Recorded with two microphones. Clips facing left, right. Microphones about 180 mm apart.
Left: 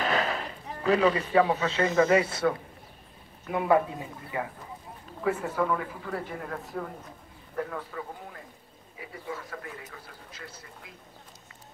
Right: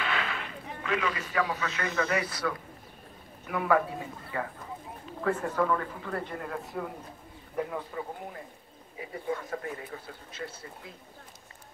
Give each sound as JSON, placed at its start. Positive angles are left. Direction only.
{"t": 0.0, "sound": "speech", "side_deg": 40}
{"t": 3.5, "sound": "a man's voice", "side_deg": 25}
{"t": 7.5, "sound": "speech", "side_deg": -20}
{"t": 10.4, "sound": "speech", "side_deg": -25}